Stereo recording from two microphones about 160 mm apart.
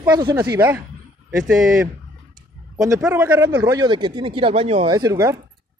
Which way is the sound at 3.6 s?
25° right (ahead or behind).